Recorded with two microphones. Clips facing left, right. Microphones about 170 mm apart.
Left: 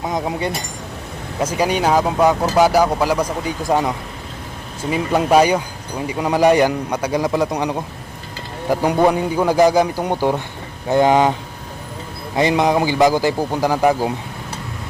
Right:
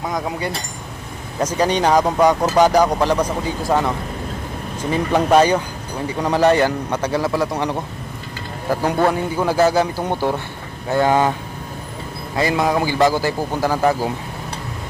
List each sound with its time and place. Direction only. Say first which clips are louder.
0.1 s speech: left 3 dB; 20° left (ahead or behind)
1.4 s speech: even; 10° left (ahead or behind)
12.4 s speech: left 2 dB; 20° left (ahead or behind)